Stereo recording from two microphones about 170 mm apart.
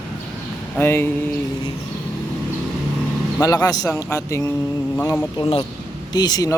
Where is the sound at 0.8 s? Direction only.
15° left (ahead or behind).